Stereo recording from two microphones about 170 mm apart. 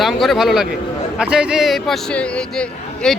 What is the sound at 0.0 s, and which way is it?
Speech, centre (ahead or behind).